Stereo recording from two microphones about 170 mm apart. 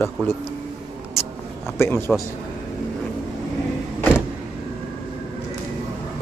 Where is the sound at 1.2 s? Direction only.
15° left (ahead or behind).